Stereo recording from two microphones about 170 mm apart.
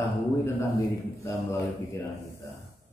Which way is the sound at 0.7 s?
15° left (ahead or behind).